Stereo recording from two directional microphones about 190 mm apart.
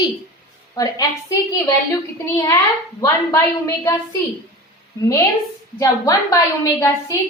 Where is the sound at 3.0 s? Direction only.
15° left (ahead or behind).